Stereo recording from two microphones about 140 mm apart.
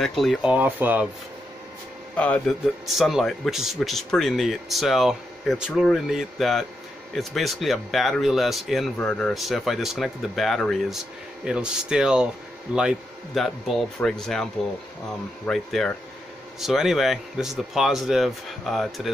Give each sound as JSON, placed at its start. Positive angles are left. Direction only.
{"t": 0.0, "sound": "speech", "side_deg": 0}
{"t": 2.1, "sound": "speech", "side_deg": 10}